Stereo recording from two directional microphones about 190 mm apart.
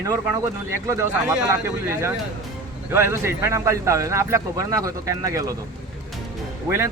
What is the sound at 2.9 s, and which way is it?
Speech, 15° right (ahead or behind).